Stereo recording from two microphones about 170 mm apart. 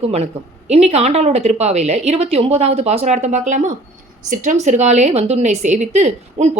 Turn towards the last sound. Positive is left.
turn(degrees=-40)  # may be behind; listen again after turning